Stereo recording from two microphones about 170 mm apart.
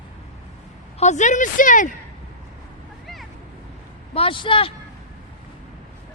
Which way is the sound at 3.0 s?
Centre (ahead or behind).